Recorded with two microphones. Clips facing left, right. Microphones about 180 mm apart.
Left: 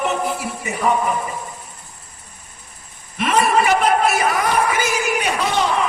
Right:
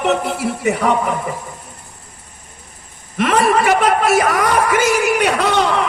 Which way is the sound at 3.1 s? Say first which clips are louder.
Right 3 dB; 65° right (ahead or behind).